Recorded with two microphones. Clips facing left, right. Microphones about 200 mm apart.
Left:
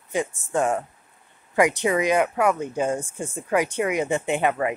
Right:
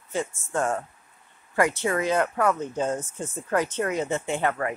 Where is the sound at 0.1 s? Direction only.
15° left (ahead or behind).